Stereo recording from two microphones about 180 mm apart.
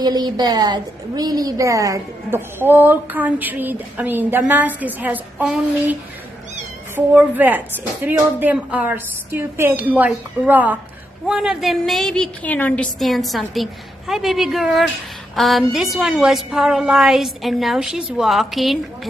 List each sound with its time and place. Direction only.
0.0 s a woman's voice: 25° right (ahead or behind)
7.0 s a woman's voice: 10° right (ahead or behind)